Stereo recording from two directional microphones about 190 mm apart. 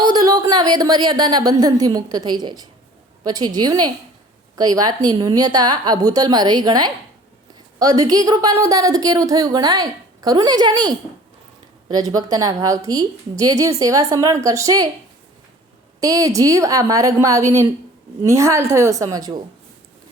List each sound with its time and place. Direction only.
0.0 s a woman's voice: 20° right (ahead or behind)
16.0 s a woman's voice: 20° right (ahead or behind)